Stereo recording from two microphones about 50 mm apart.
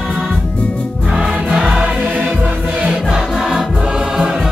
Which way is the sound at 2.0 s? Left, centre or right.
Right.